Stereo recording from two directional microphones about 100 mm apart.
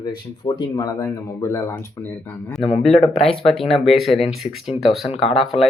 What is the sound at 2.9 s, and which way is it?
Speech, 75° left (ahead or behind).